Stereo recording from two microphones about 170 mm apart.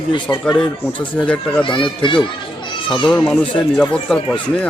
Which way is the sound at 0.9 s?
10° left (ahead or behind).